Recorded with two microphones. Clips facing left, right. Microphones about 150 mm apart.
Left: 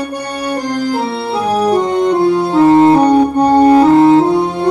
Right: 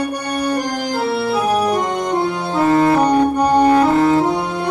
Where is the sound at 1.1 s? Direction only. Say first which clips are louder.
Left 1 dB; 30° left (ahead or behind).